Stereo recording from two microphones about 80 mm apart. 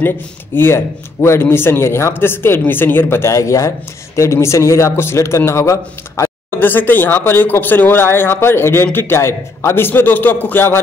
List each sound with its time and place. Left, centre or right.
0.6 s speech: left
6.6 s speech: left